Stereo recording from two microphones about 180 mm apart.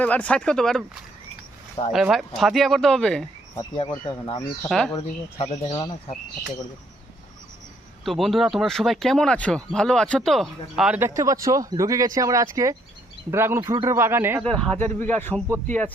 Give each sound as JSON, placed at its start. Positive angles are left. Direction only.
{"t": 0.0, "sound": "speech", "side_deg": 10}
{"t": 1.9, "sound": "speech", "side_deg": 0}
{"t": 3.6, "sound": "speech", "side_deg": 20}
{"t": 4.7, "sound": "speech", "side_deg": 5}
{"t": 4.9, "sound": "speech", "side_deg": 30}
{"t": 8.0, "sound": "speech", "side_deg": 0}
{"t": 14.6, "sound": "a man's voice", "side_deg": 5}